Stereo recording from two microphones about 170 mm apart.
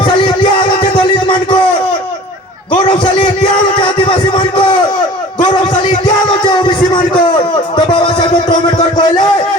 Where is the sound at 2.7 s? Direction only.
30° left (ahead or behind).